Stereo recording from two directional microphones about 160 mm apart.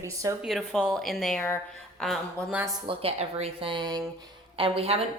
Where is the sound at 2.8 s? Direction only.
40° right (ahead or behind).